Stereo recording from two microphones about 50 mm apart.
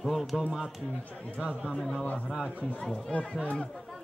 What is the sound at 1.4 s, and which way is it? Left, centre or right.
Speech, right.